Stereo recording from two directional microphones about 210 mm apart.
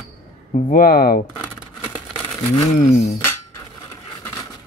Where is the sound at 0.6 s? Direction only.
40° left (ahead or behind).